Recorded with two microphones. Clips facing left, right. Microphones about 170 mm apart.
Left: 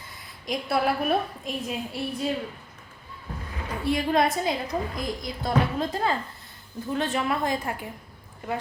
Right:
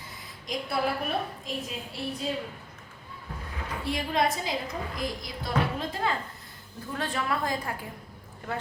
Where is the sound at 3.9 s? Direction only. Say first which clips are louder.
Left 4 dB; 55° left (ahead or behind).